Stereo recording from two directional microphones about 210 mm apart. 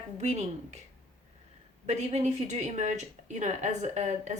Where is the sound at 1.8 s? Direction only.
30° right (ahead or behind).